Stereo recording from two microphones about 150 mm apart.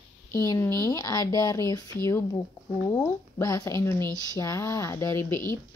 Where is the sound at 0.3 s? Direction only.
20° left (ahead or behind).